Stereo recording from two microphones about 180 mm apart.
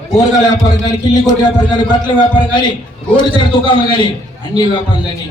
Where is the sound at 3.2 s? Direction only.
25° left (ahead or behind).